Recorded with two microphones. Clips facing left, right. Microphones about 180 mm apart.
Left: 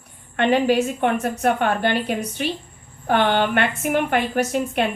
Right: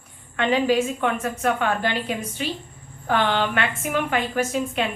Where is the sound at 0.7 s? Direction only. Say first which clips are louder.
Left 2 dB; 40° left (ahead or behind).